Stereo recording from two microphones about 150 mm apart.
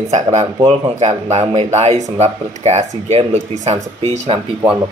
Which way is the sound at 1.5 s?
50° right (ahead or behind).